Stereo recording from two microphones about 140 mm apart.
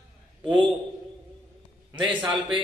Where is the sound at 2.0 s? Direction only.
35° right (ahead or behind).